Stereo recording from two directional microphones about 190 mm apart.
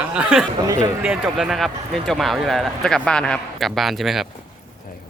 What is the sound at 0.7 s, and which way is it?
Speech, 15° right (ahead or behind).